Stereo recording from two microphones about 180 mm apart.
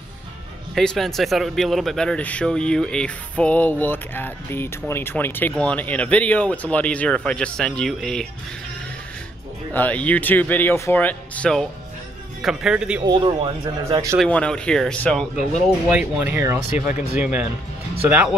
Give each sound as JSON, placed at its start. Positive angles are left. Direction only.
{"t": 0.7, "sound": "speech", "side_deg": 0}
{"t": 9.8, "sound": "speech", "side_deg": 10}
{"t": 13.0, "sound": "speech", "side_deg": -25}
{"t": 14.2, "sound": "speech", "side_deg": 5}
{"t": 15.9, "sound": "speech", "side_deg": -5}